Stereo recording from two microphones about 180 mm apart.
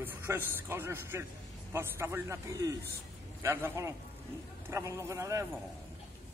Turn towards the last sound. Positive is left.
turn(degrees=-15)  # may be behind; listen again after turning